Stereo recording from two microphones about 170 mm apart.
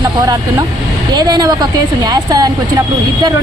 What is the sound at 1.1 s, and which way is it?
Speech, 25° right (ahead or behind).